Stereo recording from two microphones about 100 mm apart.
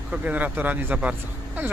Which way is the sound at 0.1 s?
15° right (ahead or behind).